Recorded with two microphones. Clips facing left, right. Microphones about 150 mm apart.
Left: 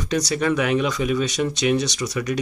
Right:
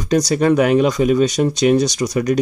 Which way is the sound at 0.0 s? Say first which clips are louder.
Right 7 dB; 40° right (ahead or behind).